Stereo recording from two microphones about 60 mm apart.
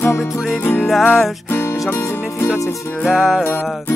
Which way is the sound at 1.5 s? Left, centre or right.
Left.